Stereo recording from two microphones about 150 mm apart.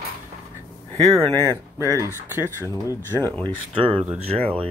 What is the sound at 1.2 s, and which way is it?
Speech, 15° left (ahead or behind).